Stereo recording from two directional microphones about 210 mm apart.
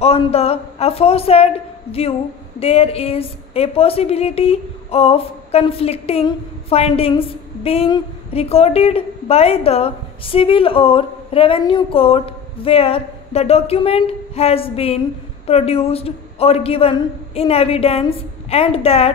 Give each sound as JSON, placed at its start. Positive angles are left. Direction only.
{"t": 0.0, "sound": "a woman's voice", "side_deg": 30}